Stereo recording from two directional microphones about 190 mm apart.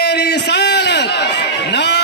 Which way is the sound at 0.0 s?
60° left (ahead or behind).